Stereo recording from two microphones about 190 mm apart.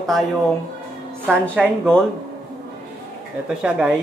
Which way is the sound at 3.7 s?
5° right (ahead or behind).